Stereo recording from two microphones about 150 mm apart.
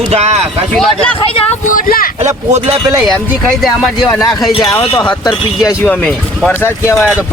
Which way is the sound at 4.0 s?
25° left (ahead or behind).